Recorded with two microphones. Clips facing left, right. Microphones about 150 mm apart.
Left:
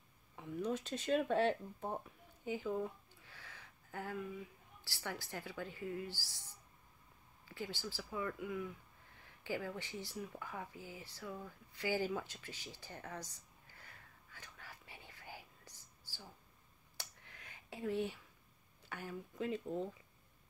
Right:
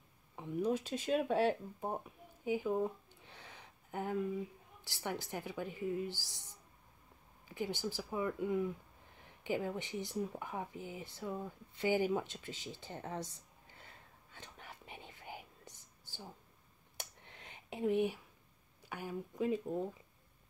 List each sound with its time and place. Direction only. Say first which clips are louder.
0.7 s speech: right 1 dB; 10° right (ahead or behind)
2.8 s a sound: right 5 dB; 20° right (ahead or behind)
4.8 s speech: right 5 dB; 20° right (ahead or behind)
9.2 s a sound: right 5 dB; 20° right (ahead or behind)
16.9 s finger snapping: right 3 dB; 20° right (ahead or behind)
18.8 s speech: right 4 dB; 15° right (ahead or behind)